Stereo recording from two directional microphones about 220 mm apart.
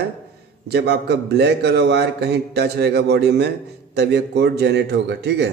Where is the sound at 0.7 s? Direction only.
45° right (ahead or behind).